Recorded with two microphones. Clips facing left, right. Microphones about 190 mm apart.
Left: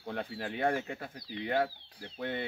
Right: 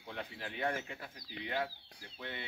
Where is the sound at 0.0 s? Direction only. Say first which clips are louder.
Left 7 dB; 50° left (ahead or behind).